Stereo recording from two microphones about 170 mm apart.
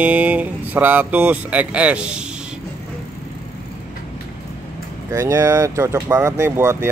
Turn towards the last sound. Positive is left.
turn(degrees=-15)  # may be behind; listen again after turning